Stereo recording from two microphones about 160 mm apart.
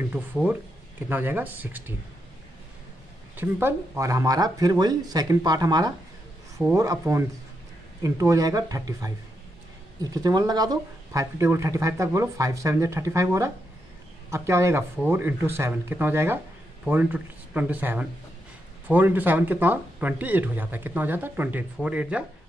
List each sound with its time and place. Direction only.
0.1 s speech: 10° right (ahead or behind)
3.3 s speech: 15° right (ahead or behind)
10.1 s speech: 25° right (ahead or behind); by 22.2 s 5° right (ahead or behind)